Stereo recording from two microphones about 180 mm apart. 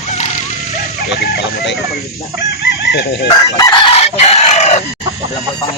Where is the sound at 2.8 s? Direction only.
70° left (ahead or behind).